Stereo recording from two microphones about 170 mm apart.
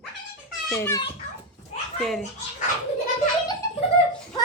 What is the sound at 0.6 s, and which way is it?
Speech, 15° left (ahead or behind).